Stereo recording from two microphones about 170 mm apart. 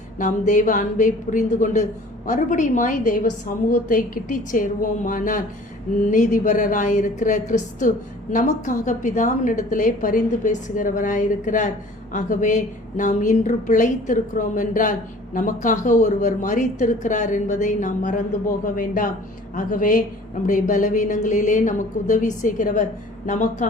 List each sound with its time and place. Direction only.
0.2 s a woman's voice: 45° left (ahead or behind)